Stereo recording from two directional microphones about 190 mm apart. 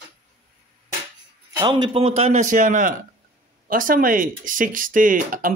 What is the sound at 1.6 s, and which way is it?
A man's voice, 25° right (ahead or behind).